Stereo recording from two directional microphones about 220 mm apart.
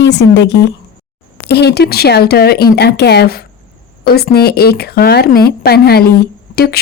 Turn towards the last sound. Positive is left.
turn(degrees=45)  # may be behind; listen again after turning